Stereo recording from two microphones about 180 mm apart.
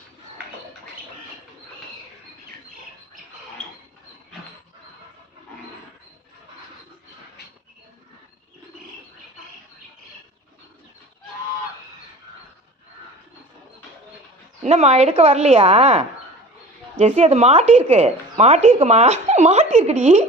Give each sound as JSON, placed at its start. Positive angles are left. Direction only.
{"t": 14.6, "sound": "a woman's voice", "side_deg": -40}